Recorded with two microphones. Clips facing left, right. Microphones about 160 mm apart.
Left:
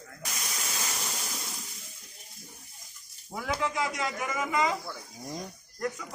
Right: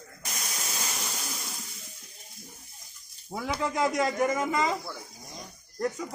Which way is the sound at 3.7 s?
45° right (ahead or behind).